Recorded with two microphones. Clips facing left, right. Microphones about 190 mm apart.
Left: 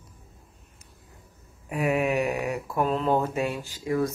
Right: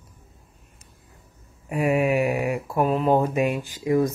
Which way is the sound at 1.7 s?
5° right (ahead or behind).